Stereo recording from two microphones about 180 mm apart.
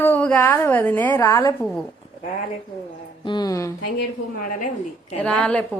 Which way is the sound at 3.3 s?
20° left (ahead or behind).